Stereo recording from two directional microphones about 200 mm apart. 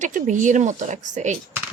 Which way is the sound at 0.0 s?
40° right (ahead or behind).